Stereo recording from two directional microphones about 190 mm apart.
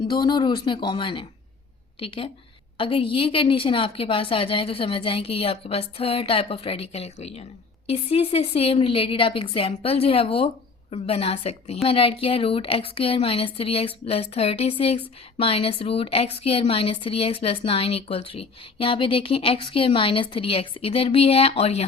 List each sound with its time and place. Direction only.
0.1 s a woman's voice: 25° left (ahead or behind)